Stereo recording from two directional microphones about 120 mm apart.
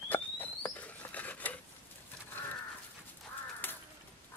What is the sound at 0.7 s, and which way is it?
Rodents, 10° left (ahead or behind).